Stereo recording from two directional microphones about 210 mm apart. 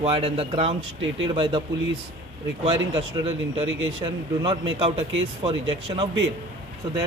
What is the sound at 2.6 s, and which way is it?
A man's voice, 25° right (ahead or behind).